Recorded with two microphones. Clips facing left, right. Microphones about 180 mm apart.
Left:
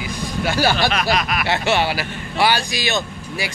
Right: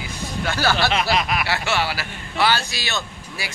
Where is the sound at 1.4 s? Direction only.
20° left (ahead or behind).